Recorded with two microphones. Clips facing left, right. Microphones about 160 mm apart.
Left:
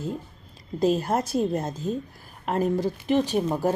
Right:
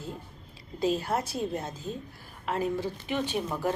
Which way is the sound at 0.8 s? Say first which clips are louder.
Left 5 dB; 45° left (ahead or behind).